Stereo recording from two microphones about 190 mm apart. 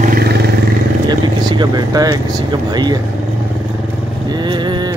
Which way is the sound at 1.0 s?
20° right (ahead or behind).